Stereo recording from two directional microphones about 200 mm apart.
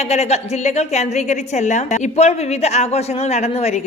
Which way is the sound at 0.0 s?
35° left (ahead or behind).